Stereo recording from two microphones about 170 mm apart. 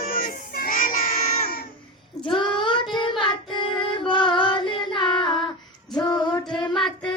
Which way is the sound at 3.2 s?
30° left (ahead or behind).